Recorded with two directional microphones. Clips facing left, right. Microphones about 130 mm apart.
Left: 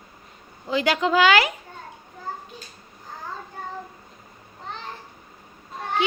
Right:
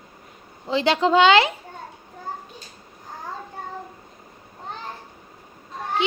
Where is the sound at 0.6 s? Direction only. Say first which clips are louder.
Right 2 dB; 25° right (ahead or behind).